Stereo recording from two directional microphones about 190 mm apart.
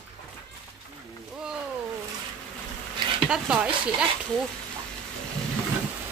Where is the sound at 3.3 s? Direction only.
5° right (ahead or behind).